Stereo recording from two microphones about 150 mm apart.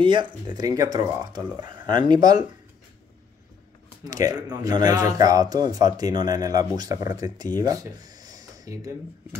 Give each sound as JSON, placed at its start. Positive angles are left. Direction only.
{"t": 0.0, "sound": "speech", "side_deg": -30}
{"t": 4.0, "sound": "speech", "side_deg": -25}